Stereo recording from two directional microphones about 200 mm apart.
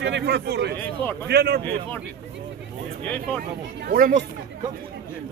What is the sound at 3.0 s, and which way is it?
Speech, 5° left (ahead or behind).